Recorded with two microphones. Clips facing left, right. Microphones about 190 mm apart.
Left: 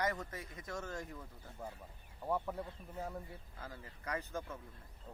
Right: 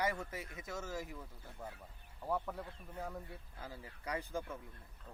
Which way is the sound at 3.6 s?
10° right (ahead or behind).